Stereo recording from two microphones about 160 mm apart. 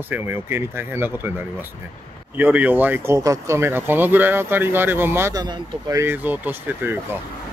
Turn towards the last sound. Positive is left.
turn(degrees=-10)  # may be behind; listen again after turning